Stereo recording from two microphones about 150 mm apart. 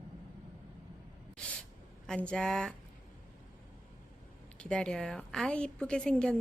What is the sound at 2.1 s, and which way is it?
Speech, 5° left (ahead or behind).